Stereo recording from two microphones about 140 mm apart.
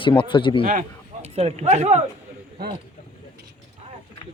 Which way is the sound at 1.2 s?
50° right (ahead or behind).